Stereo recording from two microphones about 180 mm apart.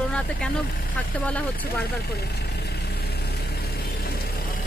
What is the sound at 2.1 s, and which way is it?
Vehicle, 65° left (ahead or behind).